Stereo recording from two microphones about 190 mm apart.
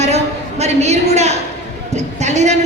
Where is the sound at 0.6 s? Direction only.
35° right (ahead or behind).